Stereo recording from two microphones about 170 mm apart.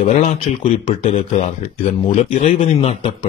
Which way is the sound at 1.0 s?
35° left (ahead or behind).